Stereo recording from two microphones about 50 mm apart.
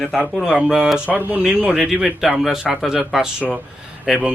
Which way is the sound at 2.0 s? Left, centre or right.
Centre.